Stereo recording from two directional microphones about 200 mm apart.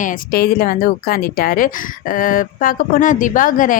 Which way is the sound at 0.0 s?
45° left (ahead or behind).